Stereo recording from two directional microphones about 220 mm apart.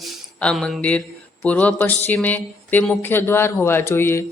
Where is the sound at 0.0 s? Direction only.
Centre (ahead or behind).